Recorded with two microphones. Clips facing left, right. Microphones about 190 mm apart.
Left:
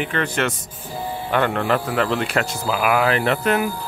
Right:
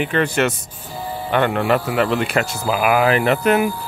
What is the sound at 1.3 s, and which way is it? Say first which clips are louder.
Speech: right 3 dB; 5° right (ahead or behind).